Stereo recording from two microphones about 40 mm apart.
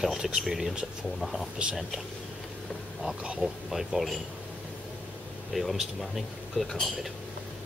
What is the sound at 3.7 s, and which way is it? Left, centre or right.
Speech, centre.